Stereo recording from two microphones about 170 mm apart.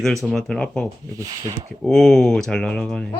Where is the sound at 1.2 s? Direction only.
20° right (ahead or behind).